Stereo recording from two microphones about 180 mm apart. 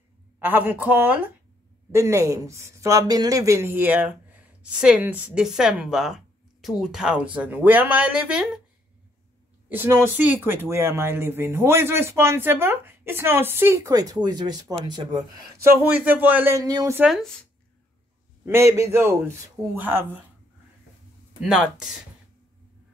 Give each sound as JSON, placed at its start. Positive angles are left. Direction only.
{"t": 0.4, "sound": "speech", "side_deg": -10}
{"t": 9.7, "sound": "speech", "side_deg": -10}
{"t": 15.8, "sound": "speech", "side_deg": -10}
{"t": 17.0, "sound": "speech", "side_deg": 0}
{"t": 18.4, "sound": "speech", "side_deg": -15}
{"t": 21.4, "sound": "speech", "side_deg": -5}